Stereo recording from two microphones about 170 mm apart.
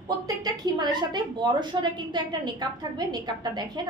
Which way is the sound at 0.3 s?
25° right (ahead or behind).